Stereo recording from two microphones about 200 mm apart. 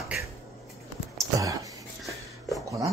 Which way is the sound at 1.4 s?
15° right (ahead or behind).